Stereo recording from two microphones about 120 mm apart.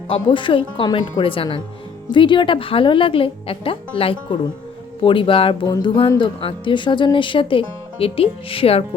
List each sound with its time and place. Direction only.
0.1 s speech: 45° left (ahead or behind)
5.6 s speech: 30° left (ahead or behind)
6.1 s speech: 45° left (ahead or behind)